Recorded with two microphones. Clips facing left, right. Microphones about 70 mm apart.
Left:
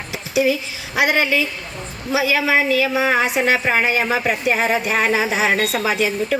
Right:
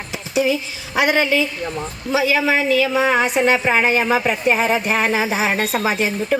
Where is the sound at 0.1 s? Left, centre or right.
Right.